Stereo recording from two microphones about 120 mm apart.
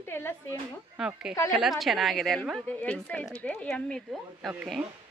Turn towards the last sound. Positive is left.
turn(degrees=-5)  # may be behind; listen again after turning